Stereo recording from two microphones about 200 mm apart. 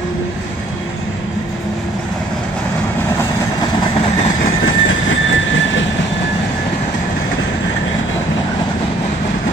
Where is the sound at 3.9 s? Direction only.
30° left (ahead or behind).